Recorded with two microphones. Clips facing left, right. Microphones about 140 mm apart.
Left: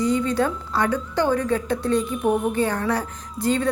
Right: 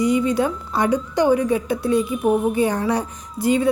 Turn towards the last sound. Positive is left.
turn(degrees=-10)  # may be behind; listen again after turning